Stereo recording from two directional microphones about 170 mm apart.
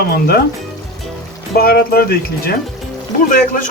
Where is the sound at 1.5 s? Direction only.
65° left (ahead or behind).